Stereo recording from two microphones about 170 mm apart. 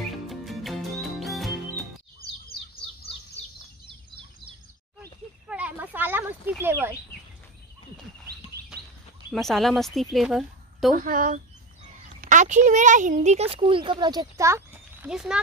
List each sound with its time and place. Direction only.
0.3 s music: centre (ahead or behind)
5.5 s a sound: 10° right (ahead or behind)
9.3 s speech: centre (ahead or behind)
11.0 s speech: 55° right (ahead or behind); by 15.0 s 15° right (ahead or behind)
15.0 s speech: 5° right (ahead or behind)